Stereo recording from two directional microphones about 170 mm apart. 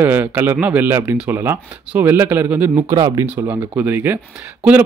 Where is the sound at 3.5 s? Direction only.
10° right (ahead or behind).